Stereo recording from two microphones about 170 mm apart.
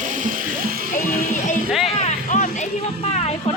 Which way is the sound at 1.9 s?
40° left (ahead or behind).